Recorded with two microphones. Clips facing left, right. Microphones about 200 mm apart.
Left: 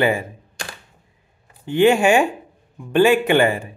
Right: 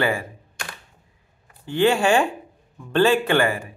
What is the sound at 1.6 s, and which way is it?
Speech, 15° left (ahead or behind).